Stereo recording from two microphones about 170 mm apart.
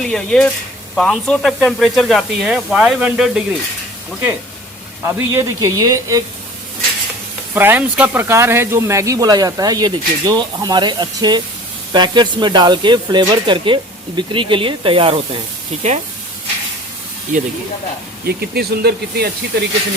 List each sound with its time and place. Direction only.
0.0 s speech: 5° left (ahead or behind)
5.0 s speech: 15° right (ahead or behind)
7.5 s speech: 10° right (ahead or behind); by 15.9 s 40° right (ahead or behind)
17.3 s speech: 50° right (ahead or behind)
18.3 s speech: 70° right (ahead or behind)